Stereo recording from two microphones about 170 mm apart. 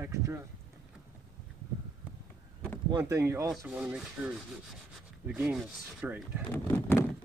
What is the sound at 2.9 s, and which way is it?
Speech, 15° right (ahead or behind).